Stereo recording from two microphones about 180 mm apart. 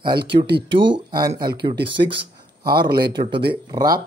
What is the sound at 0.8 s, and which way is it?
Speech, 25° right (ahead or behind).